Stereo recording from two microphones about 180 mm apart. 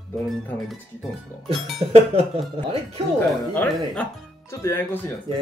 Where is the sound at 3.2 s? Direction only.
5° left (ahead or behind).